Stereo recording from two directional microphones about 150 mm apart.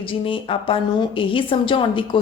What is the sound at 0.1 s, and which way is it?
A woman's voice, 35° left (ahead or behind).